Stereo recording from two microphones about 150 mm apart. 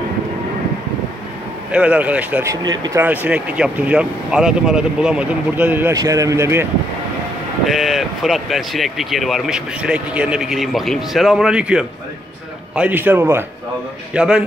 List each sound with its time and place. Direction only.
1.7 s speech: 10° right (ahead or behind)
2.5 s speech: 25° right (ahead or behind)
3.0 s speech: 10° right (ahead or behind)
5.9 s speech: 25° right (ahead or behind)
7.6 s speech: centre (ahead or behind)